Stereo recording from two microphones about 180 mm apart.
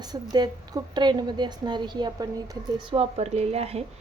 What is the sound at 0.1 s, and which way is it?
A woman's voice, 20° right (ahead or behind).